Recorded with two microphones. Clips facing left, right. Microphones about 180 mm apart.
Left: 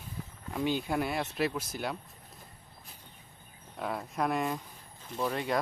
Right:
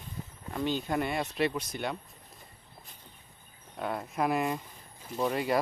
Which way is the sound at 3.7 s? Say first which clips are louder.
Right 1 dB; centre (ahead or behind).